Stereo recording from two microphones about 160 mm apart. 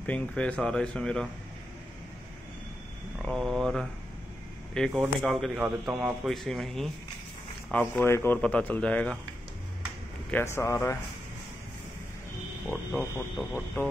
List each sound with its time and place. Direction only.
0.0 s a man's voice: 10° left (ahead or behind)
3.2 s a man's voice: centre (ahead or behind)
10.3 s speech: 15° left (ahead or behind)
12.6 s a man's voice: 5° left (ahead or behind)